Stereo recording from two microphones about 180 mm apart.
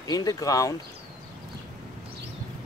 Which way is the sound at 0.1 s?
20° left (ahead or behind).